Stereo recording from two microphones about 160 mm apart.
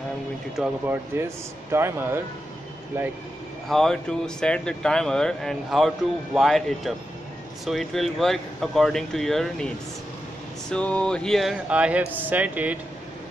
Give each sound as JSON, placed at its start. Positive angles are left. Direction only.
{"t": 0.8, "sound": "speech", "side_deg": -15}
{"t": 3.6, "sound": "speech", "side_deg": 5}
{"t": 10.7, "sound": "speech", "side_deg": 5}